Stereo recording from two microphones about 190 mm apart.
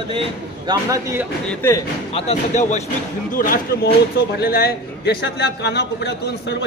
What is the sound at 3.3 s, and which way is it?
A man's voice, 50° left (ahead or behind).